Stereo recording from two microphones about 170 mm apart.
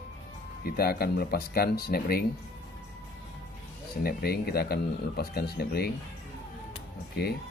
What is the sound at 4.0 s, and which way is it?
Speech, 65° left (ahead or behind).